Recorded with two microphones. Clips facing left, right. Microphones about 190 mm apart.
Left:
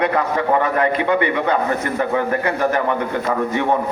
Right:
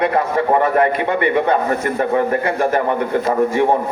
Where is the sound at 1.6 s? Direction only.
30° right (ahead or behind).